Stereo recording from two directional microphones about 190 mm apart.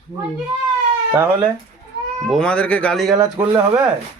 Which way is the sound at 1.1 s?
10° right (ahead or behind).